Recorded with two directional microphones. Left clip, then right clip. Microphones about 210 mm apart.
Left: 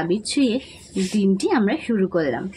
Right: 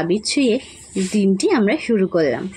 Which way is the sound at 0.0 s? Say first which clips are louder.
Right 3 dB; 15° right (ahead or behind).